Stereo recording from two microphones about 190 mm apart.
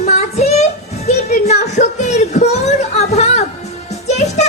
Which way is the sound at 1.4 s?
35° left (ahead or behind).